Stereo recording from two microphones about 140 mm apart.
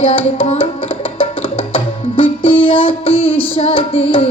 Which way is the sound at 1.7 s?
40° left (ahead or behind).